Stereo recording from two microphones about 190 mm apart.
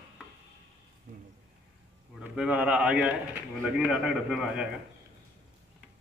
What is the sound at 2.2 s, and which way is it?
A man's voice, 5° right (ahead or behind).